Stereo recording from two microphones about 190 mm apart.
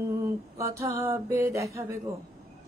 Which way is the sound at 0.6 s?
15° right (ahead or behind).